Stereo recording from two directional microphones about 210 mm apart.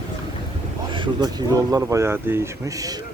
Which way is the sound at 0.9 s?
25° right (ahead or behind).